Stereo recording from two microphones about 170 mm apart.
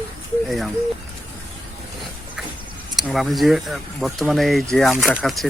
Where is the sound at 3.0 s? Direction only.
Centre (ahead or behind).